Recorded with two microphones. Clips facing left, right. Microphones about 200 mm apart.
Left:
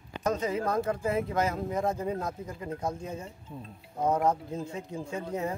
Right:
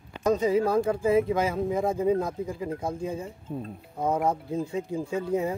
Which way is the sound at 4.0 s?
10° right (ahead or behind).